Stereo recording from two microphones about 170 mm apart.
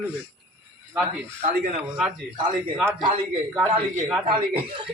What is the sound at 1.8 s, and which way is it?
Speech, 5° right (ahead or behind).